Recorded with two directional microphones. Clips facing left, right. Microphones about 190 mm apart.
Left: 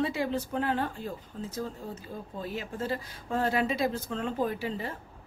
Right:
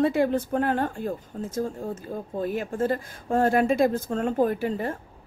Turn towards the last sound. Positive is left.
turn(degrees=-50)  # may be behind; listen again after turning